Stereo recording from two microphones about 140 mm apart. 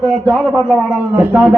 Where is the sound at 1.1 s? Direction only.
15° right (ahead or behind).